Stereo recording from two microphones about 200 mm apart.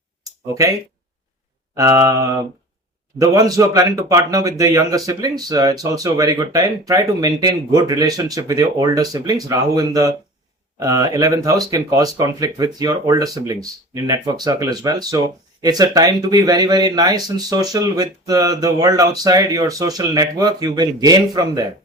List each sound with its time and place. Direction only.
1.7 s a man's voice: 15° right (ahead or behind)